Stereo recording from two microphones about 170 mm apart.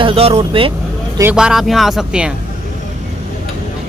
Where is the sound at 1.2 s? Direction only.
5° right (ahead or behind).